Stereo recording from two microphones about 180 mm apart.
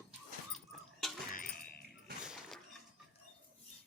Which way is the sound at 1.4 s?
60° left (ahead or behind).